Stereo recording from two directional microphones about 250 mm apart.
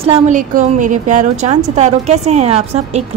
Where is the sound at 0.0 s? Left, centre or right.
Right.